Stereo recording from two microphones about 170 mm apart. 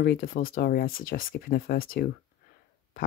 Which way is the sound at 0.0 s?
60° left (ahead or behind).